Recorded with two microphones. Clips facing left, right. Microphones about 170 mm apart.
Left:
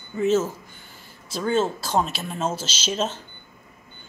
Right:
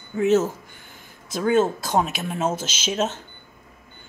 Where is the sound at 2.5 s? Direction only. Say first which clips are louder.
Right 2 dB; 50° right (ahead or behind).